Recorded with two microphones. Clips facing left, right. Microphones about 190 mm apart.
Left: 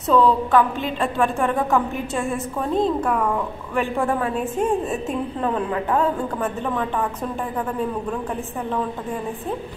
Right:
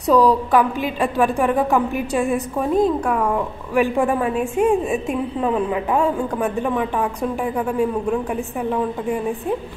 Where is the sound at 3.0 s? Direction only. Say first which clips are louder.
Right 1 dB; 5° right (ahead or behind).